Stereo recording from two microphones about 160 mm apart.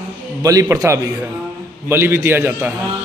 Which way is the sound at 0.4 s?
20° right (ahead or behind).